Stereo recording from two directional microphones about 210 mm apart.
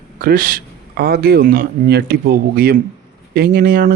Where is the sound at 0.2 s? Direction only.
45° right (ahead or behind).